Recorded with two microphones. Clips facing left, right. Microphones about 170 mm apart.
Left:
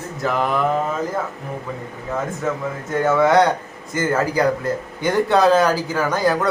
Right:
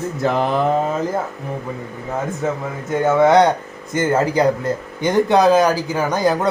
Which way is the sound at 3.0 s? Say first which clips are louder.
Right 2 dB; 20° right (ahead or behind).